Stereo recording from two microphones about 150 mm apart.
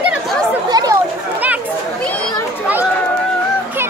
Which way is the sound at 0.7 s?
25° right (ahead or behind).